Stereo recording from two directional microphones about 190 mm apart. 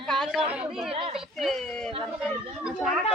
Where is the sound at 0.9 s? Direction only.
30° right (ahead or behind).